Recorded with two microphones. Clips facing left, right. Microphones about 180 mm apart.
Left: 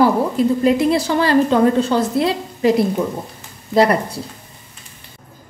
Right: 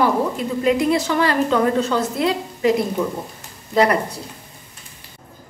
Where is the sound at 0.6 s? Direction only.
35° left (ahead or behind).